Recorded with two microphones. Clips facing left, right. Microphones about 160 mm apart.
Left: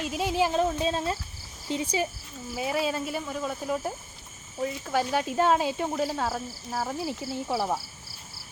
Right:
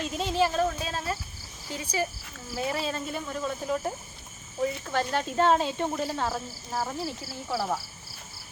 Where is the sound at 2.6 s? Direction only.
5° left (ahead or behind); by 7.8 s 25° left (ahead or behind).